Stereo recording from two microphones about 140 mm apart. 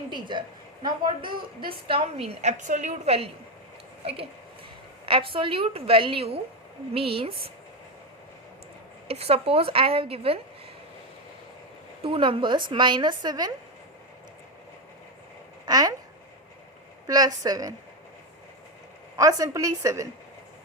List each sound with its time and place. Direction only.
0.1 s a woman's voice: 35° right (ahead or behind); by 3.2 s 60° right (ahead or behind)
5.0 s a woman's voice: 40° right (ahead or behind)
9.0 s a woman's voice: 45° right (ahead or behind)
12.0 s a woman's voice: 40° right (ahead or behind)
15.6 s a woman's voice: 25° right (ahead or behind)
17.1 s a woman's voice: 25° right (ahead or behind)
19.1 s a woman's voice: 25° right (ahead or behind)